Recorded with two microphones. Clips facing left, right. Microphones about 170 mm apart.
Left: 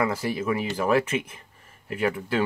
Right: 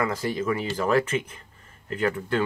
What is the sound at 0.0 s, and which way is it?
Speech, 10° left (ahead or behind).